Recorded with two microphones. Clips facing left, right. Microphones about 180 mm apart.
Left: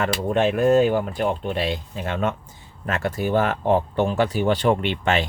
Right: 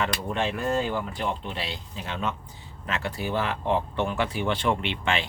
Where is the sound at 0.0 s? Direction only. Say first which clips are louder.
Left 7 dB; 50° left (ahead or behind).